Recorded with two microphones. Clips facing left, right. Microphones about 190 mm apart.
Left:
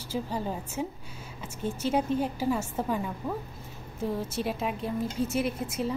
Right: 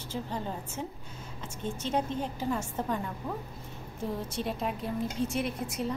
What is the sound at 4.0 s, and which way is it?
A woman's voice, 5° left (ahead or behind).